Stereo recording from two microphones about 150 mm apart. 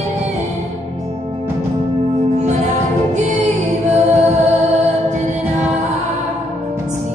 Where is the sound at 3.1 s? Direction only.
50° right (ahead or behind).